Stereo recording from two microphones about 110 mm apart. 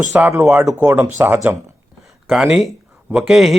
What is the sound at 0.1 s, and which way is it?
A man's voice, 15° right (ahead or behind).